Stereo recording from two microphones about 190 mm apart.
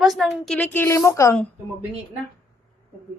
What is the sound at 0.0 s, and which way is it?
A woman's voice, centre (ahead or behind).